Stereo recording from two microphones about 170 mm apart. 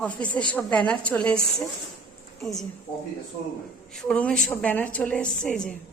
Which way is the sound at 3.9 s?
5° left (ahead or behind).